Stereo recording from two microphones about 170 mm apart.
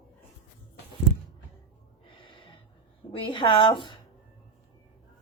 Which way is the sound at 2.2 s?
30° left (ahead or behind).